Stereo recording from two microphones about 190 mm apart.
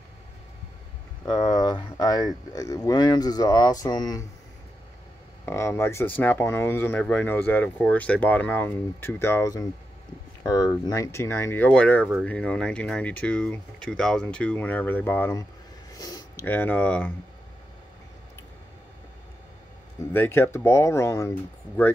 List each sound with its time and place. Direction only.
1.2 s speech: 20° left (ahead or behind)
5.4 s speech: 15° left (ahead or behind)
15.9 s a sound: 20° left (ahead or behind)
16.4 s speech: 10° left (ahead or behind)
20.0 s speech: 10° left (ahead or behind)